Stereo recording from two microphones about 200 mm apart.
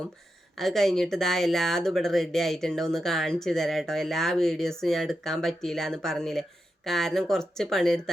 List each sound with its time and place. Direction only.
0.6 s speech: centre (ahead or behind)